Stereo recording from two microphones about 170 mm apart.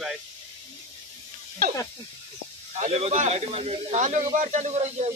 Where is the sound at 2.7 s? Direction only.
40° right (ahead or behind).